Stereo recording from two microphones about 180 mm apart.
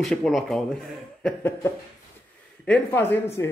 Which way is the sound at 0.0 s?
Centre (ahead or behind).